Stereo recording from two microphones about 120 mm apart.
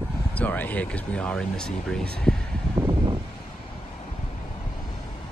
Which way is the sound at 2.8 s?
40° right (ahead or behind).